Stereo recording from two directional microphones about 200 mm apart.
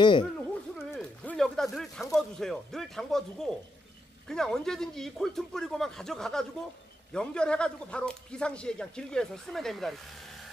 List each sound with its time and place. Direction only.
0.0 s speech: 25° left (ahead or behind)
0.7 s a sound: centre (ahead or behind)
2.1 s speech: centre (ahead or behind)